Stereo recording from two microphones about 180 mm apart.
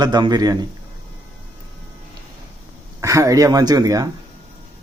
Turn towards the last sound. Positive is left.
turn(degrees=-20)  # may be behind; listen again after turning